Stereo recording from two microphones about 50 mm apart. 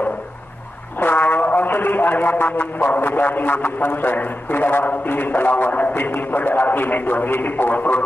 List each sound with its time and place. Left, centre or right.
0.9 s a man's voice: left